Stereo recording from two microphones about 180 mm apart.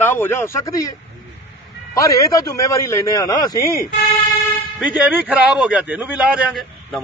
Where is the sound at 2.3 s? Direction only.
20° left (ahead or behind).